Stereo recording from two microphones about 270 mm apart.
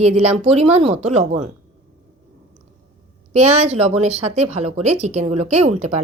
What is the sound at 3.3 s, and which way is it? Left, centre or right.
Speech, right.